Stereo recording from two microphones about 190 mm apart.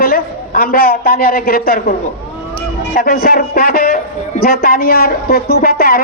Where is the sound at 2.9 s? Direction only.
50° left (ahead or behind).